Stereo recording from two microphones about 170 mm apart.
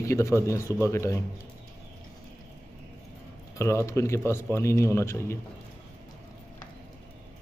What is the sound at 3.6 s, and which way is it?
A man's voice, 15° left (ahead or behind).